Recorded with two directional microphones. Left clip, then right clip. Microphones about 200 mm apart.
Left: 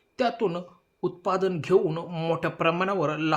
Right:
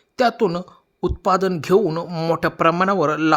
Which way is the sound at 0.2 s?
45° right (ahead or behind).